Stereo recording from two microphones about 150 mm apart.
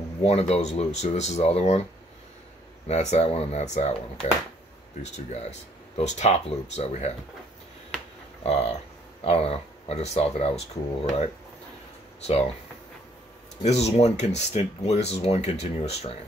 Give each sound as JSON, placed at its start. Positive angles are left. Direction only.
{"t": 0.2, "sound": "speech", "side_deg": 45}
{"t": 2.9, "sound": "speech", "side_deg": 50}
{"t": 8.5, "sound": "speech", "side_deg": 45}
{"t": 13.6, "sound": "speech", "side_deg": 45}